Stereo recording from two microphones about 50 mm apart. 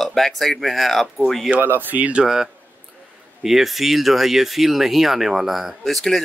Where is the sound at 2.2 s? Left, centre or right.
Centre.